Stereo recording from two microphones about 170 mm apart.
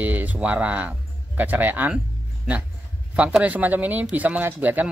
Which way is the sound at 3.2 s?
5° right (ahead or behind).